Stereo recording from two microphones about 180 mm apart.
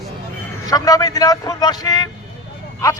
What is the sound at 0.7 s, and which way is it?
Speech, 20° left (ahead or behind).